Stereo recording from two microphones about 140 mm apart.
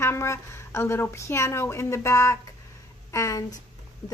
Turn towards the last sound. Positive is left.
turn(degrees=25)  # may be behind; listen again after turning